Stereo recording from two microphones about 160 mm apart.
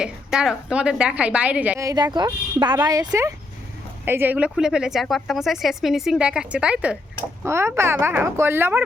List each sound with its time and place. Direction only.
0.0 s a woman's voice: 5° right (ahead or behind)
1.8 s a woman's voice: 25° right (ahead or behind)